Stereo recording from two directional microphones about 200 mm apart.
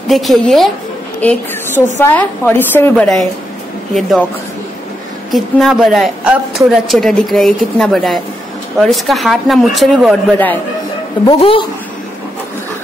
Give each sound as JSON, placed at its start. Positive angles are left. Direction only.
{"t": 0.1, "sound": "a woman's voice", "side_deg": 0}
{"t": 5.3, "sound": "a woman's voice", "side_deg": 0}
{"t": 11.2, "sound": "speech", "side_deg": 25}